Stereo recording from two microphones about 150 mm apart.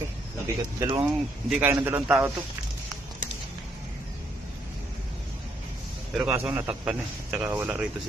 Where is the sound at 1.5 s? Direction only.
5° right (ahead or behind).